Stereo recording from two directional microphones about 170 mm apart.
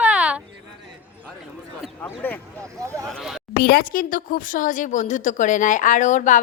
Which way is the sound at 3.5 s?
65° left (ahead or behind).